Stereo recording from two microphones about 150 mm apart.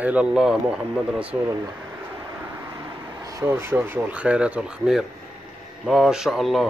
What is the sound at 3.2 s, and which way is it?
A man's voice, 20° right (ahead or behind).